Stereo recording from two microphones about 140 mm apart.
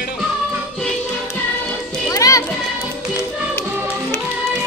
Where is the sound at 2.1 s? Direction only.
25° left (ahead or behind).